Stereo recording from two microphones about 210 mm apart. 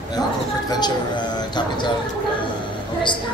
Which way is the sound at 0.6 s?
20° left (ahead or behind).